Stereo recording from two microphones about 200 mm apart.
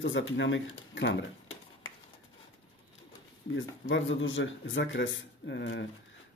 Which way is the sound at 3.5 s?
70° left (ahead or behind).